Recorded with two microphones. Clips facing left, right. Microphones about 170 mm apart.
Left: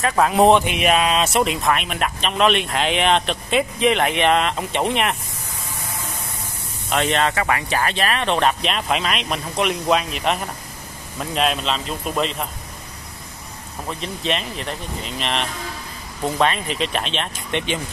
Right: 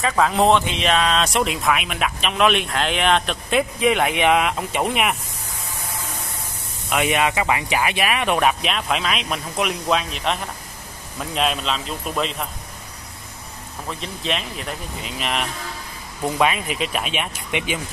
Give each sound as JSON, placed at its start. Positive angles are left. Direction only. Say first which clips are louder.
{"t": 0.1, "sound": "speech", "louder": "left 3 dB", "side_deg": 10}
{"t": 6.9, "sound": "speech", "louder": "even", "side_deg": -10}
{"t": 13.8, "sound": "speech", "louder": "left 2 dB", "side_deg": 0}